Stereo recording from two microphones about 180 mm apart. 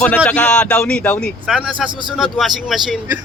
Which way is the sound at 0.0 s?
10° left (ahead or behind).